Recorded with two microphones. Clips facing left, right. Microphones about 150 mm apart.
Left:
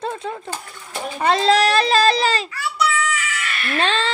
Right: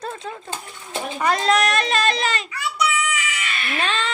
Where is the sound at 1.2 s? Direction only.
25° left (ahead or behind).